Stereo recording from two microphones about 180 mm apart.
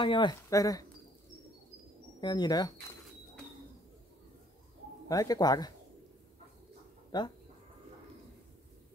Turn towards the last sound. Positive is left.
turn(degrees=25)  # may be behind; listen again after turning